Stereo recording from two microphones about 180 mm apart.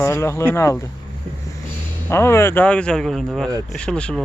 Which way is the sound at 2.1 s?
15° left (ahead or behind).